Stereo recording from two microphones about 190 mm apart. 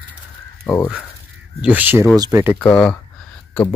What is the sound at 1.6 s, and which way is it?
Speech, 10° right (ahead or behind).